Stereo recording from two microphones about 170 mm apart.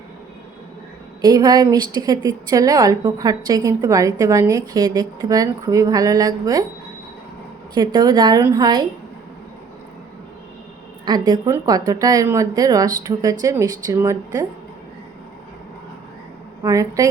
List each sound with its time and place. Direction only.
1.2 s a woman's voice: 20° right (ahead or behind)
7.8 s a woman's voice: 25° right (ahead or behind)
11.0 s a woman's voice: 25° right (ahead or behind)
16.6 s a woman's voice: 20° right (ahead or behind)